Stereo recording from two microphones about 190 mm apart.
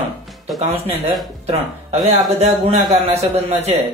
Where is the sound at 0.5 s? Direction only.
Centre (ahead or behind).